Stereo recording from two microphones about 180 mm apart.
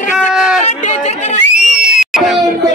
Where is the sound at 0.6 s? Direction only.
40° left (ahead or behind).